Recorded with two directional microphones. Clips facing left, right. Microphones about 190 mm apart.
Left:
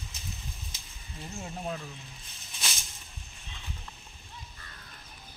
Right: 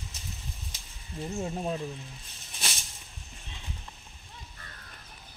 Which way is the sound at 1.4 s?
25° right (ahead or behind).